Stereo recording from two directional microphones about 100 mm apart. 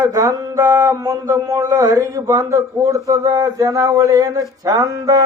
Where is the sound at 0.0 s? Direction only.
35° right (ahead or behind).